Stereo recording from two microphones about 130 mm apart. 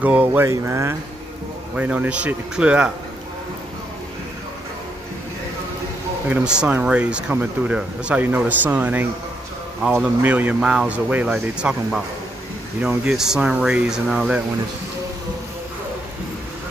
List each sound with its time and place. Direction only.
0.0 s speech: 10° right (ahead or behind)
1.8 s speech: 10° right (ahead or behind)
6.2 s speech: 10° right (ahead or behind)
10.2 s speech: 10° right (ahead or behind)